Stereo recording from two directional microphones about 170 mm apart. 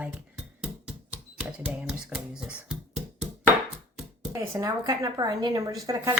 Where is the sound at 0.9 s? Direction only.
10° right (ahead or behind).